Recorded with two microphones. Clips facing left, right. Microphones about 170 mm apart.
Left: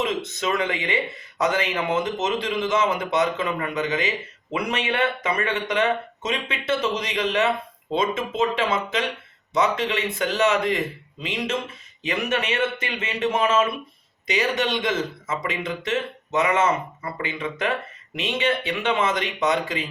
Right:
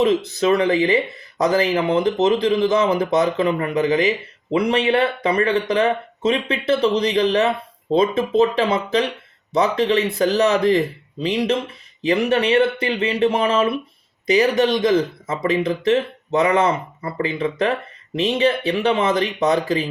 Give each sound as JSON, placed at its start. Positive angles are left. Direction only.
{"t": 0.0, "sound": "speech", "side_deg": -35}